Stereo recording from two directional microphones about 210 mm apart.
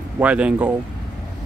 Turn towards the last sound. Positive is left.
turn(degrees=-5)  # may be behind; listen again after turning